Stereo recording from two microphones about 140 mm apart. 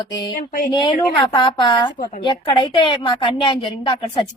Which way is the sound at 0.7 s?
35° left (ahead or behind).